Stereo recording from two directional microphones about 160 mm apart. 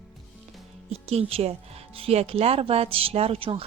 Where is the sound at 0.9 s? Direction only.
40° right (ahead or behind).